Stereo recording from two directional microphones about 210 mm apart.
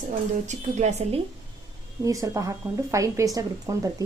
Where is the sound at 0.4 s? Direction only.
30° right (ahead or behind).